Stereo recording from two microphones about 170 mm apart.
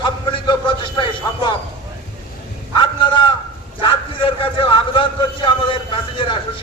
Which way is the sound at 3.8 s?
30° left (ahead or behind).